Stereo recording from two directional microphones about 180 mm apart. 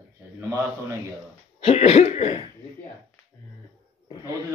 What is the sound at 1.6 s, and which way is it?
Cough, 35° left (ahead or behind).